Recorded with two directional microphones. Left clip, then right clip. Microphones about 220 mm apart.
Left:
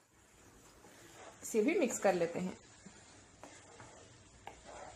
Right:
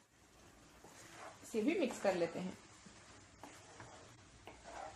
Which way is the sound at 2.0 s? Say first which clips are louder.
Left 5 dB; 30° left (ahead or behind).